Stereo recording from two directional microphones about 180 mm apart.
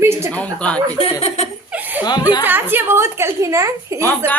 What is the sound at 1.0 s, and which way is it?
Speech, 35° left (ahead or behind).